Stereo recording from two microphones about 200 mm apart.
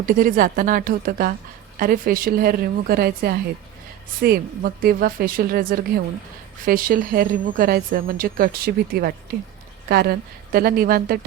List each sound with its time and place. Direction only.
0.0 s speech: 45° right (ahead or behind)